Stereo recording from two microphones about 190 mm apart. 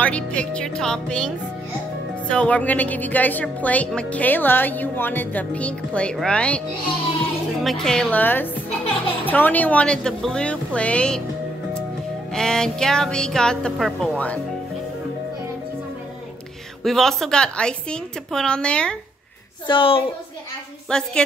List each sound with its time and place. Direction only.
0.0 s a woman's voice: 5° left (ahead or behind)
2.2 s a woman's voice: 5° left (ahead or behind)
7.6 s a woman's voice: 5° left (ahead or behind)
12.3 s a woman's voice: 5° left (ahead or behind)
16.8 s a woman's voice: centre (ahead or behind)
19.7 s a woman's voice: 30° left (ahead or behind)
20.9 s a woman's voice: 5° left (ahead or behind)